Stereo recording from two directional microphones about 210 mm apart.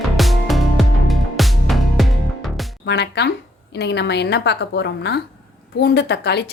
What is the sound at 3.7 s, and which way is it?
A woman's voice, 55° left (ahead or behind).